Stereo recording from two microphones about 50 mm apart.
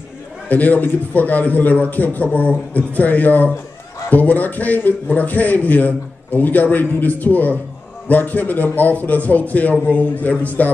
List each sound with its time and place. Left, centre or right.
0.5 s a man's voice: left